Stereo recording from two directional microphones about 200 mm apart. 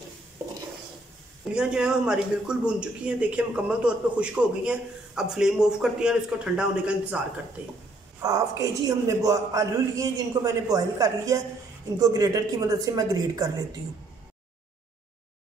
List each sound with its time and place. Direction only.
1.5 s speech: 5° right (ahead or behind)
8.2 s a man's voice: 15° right (ahead or behind)